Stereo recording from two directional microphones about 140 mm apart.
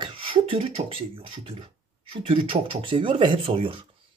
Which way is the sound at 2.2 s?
40° right (ahead or behind).